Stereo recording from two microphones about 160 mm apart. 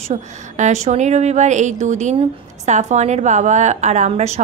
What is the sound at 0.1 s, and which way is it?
A woman's voice, 45° right (ahead or behind).